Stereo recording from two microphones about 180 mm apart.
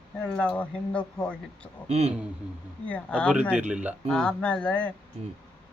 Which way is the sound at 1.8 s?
35° right (ahead or behind).